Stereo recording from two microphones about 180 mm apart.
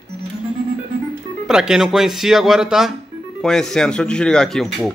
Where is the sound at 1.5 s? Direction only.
5° right (ahead or behind).